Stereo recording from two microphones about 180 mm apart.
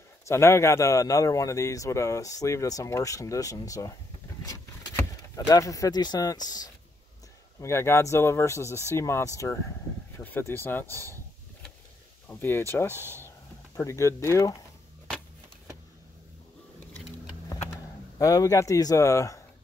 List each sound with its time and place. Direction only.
0.3 s a man's voice: 15° left (ahead or behind)
12.3 s a man's voice: 10° left (ahead or behind)
12.9 s speech: 15° right (ahead or behind)
13.7 s a man's voice: 15° left (ahead or behind)
18.2 s a man's voice: 20° left (ahead or behind)